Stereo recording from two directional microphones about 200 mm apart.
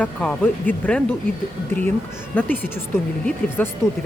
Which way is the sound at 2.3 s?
10° left (ahead or behind).